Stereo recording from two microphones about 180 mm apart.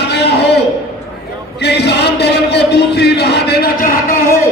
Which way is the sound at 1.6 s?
70° left (ahead or behind).